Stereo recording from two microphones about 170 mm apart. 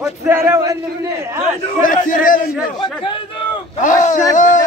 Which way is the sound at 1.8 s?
50° left (ahead or behind).